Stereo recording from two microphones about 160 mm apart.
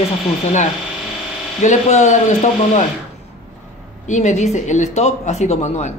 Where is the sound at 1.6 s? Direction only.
45° left (ahead or behind).